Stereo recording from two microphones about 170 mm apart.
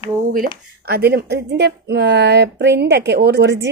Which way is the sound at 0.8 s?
65° right (ahead or behind).